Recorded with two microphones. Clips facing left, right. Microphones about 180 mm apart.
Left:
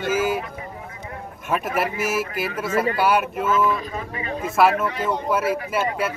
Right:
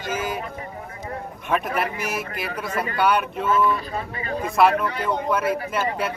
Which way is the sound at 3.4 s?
35° right (ahead or behind).